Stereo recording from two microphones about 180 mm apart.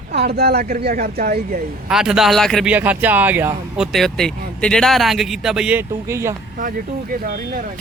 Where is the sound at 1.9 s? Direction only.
5° right (ahead or behind).